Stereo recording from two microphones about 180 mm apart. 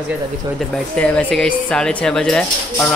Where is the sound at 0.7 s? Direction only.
5° left (ahead or behind).